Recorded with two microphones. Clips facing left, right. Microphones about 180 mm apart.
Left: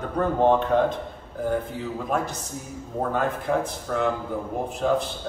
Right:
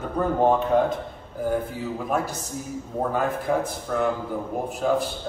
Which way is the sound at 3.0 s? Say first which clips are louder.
Even; 5° right (ahead or behind).